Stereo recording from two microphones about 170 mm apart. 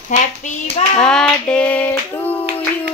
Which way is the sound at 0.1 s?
45° left (ahead or behind).